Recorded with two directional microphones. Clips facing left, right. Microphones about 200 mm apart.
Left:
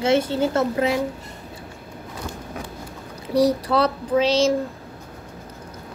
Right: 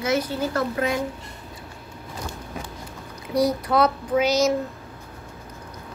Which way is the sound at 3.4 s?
35° left (ahead or behind).